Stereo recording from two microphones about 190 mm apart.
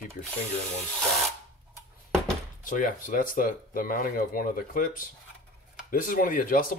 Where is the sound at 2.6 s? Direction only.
45° left (ahead or behind).